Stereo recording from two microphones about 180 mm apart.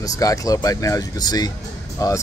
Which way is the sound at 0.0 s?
20° left (ahead or behind).